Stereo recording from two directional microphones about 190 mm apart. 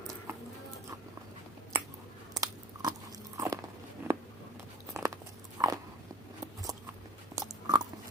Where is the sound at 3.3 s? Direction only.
15° right (ahead or behind).